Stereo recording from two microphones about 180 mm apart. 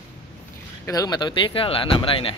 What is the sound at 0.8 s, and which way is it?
Speech, 20° left (ahead or behind).